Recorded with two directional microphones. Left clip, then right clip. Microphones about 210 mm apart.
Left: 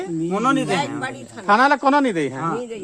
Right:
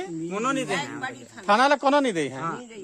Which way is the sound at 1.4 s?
60° right (ahead or behind).